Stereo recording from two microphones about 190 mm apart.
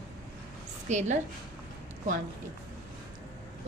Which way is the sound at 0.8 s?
40° right (ahead or behind).